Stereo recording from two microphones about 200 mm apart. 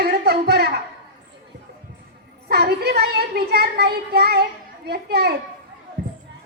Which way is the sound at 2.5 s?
55° right (ahead or behind).